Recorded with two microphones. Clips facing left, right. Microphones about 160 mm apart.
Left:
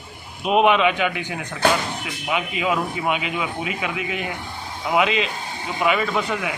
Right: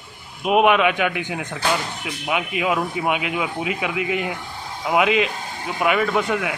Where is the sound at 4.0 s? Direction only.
90° right.